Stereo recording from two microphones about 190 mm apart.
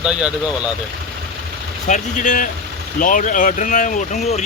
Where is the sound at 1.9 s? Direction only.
40° left (ahead or behind).